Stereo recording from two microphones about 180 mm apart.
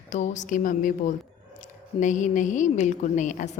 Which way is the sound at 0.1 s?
45° left (ahead or behind).